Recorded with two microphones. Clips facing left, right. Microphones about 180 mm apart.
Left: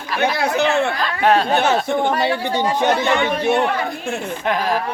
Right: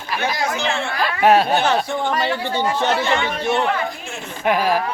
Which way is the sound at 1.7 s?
20° left (ahead or behind).